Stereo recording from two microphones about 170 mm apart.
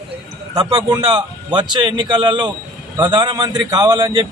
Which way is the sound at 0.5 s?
25° right (ahead or behind).